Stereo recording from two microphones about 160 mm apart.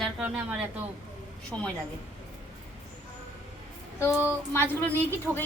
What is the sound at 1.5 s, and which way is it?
Speech, 5° left (ahead or behind).